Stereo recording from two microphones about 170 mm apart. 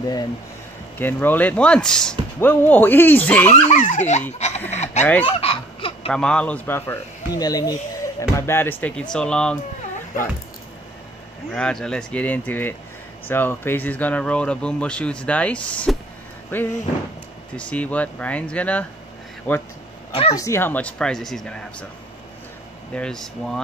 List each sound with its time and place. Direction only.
0.9 s speech: 10° left (ahead or behind)
3.6 s speech: 45° left (ahead or behind)
5.2 s fowl: 35° left (ahead or behind)
6.1 s speech: 5° left (ahead or behind)
7.3 s speech: 20° left (ahead or behind); by 9.6 s 5° left (ahead or behind)
11.5 s speech: 5° left (ahead or behind)
20.1 s speech: 35° left (ahead or behind)
20.3 s speech: 15° left (ahead or behind)
22.9 s speech: 5° left (ahead or behind)